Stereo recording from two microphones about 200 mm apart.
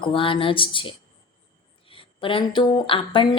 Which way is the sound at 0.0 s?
25° left (ahead or behind).